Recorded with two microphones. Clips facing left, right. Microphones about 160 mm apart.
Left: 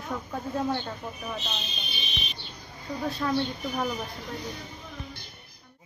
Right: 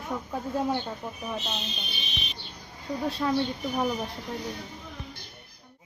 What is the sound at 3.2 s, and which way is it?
Speech, 20° right (ahead or behind).